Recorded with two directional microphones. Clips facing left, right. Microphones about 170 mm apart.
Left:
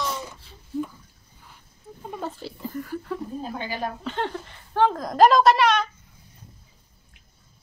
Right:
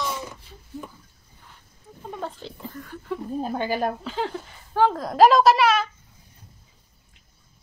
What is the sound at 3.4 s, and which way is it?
Speech, 50° right (ahead or behind).